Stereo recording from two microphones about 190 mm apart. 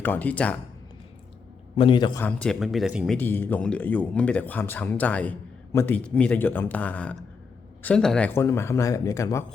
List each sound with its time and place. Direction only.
0.0 s speech: 10° left (ahead or behind)
1.7 s a man's voice: 25° left (ahead or behind)
2.2 s speech: 5° left (ahead or behind)
3.2 s speech: 10° left (ahead or behind)